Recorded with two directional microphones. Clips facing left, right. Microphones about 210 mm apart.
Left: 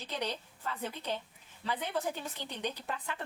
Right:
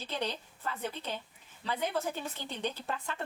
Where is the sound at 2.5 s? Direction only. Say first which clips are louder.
Right 2 dB; 15° left (ahead or behind).